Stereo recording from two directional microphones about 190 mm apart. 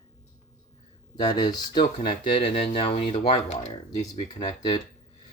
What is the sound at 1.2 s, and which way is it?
Speech, 25° left (ahead or behind).